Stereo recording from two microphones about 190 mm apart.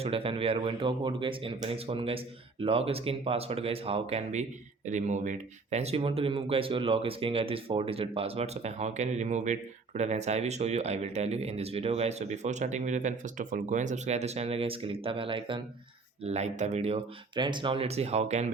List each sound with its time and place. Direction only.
0.0 s speech: 30° right (ahead or behind)